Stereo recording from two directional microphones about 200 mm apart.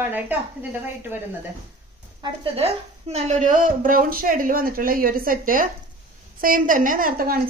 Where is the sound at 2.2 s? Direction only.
30° right (ahead or behind); by 7.4 s 45° right (ahead or behind).